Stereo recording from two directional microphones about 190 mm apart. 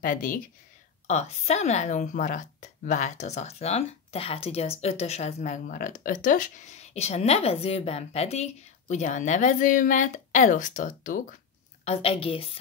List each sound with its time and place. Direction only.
0.0 s a woman's voice: 45° left (ahead or behind)
11.8 s a woman's voice: 30° left (ahead or behind)